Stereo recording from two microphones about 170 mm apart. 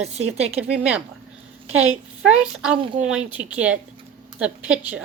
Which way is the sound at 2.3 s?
5° right (ahead or behind).